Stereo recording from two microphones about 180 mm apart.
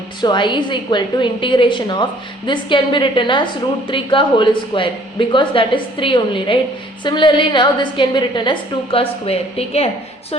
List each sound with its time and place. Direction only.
0.2 s a woman's voice: 25° left (ahead or behind)